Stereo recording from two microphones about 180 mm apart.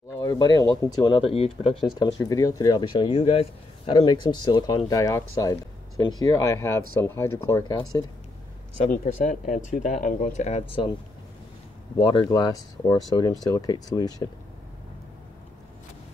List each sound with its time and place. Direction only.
0.2 s a man's voice: 20° left (ahead or behind)
8.7 s speech: 45° left (ahead or behind)
12.0 s a man's voice: 25° left (ahead or behind)